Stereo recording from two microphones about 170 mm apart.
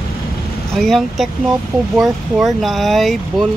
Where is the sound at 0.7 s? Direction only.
Centre (ahead or behind).